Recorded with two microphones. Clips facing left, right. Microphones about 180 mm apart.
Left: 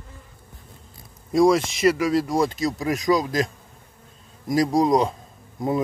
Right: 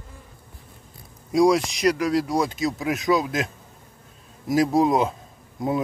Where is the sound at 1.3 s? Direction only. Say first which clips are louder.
Left 1 dB; centre (ahead or behind).